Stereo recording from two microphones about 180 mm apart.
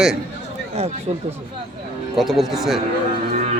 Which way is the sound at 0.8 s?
35° right (ahead or behind).